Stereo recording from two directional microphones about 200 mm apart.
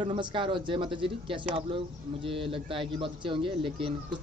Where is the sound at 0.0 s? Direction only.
25° right (ahead or behind).